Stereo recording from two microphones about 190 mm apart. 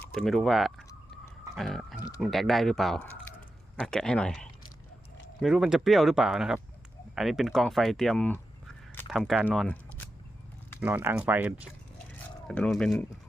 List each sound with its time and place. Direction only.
0.1 s speech: centre (ahead or behind)
2.0 s speech: 20° left (ahead or behind)
2.2 s speech: centre (ahead or behind)
10.8 s speech: 10° right (ahead or behind)
12.5 s speech: 5° left (ahead or behind)